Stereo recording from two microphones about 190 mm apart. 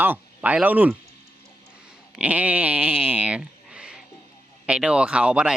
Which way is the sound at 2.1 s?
5° right (ahead or behind).